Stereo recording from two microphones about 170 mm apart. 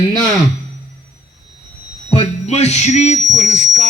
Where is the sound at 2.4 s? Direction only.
40° left (ahead or behind).